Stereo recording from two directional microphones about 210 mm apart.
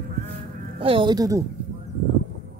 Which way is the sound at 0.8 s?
25° right (ahead or behind).